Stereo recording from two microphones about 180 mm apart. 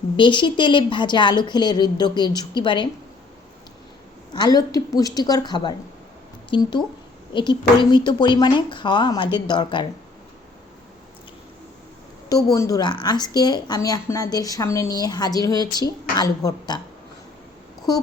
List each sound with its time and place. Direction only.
0.2 s a woman's voice: 25° left (ahead or behind)
4.4 s a woman's voice: 20° left (ahead or behind)
12.5 s a woman's voice: 20° left (ahead or behind)